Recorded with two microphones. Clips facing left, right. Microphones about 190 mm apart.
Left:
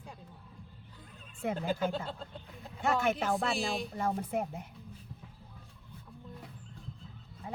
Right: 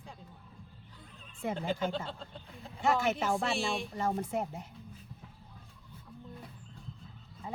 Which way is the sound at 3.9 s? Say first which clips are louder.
Even; 55° left (ahead or behind).